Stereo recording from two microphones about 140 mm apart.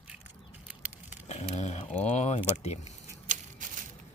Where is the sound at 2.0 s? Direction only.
50° left (ahead or behind).